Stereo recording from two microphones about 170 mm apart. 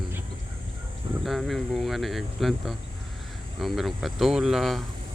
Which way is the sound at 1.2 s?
Centre (ahead or behind).